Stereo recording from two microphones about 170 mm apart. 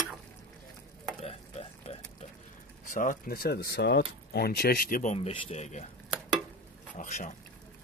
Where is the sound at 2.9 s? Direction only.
50° left (ahead or behind).